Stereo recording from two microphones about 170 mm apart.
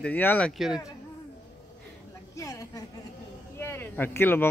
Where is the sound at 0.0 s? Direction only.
10° left (ahead or behind).